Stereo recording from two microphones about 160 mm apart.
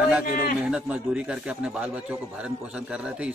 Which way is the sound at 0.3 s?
60° left (ahead or behind).